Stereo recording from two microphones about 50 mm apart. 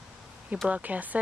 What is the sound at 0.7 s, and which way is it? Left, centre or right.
Speech, right.